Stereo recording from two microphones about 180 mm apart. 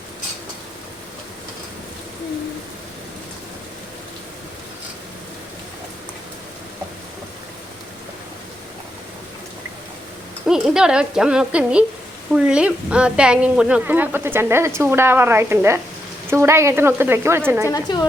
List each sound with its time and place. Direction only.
10.4 s a woman's voice: 5° right (ahead or behind)
17.7 s a woman's voice: 20° left (ahead or behind)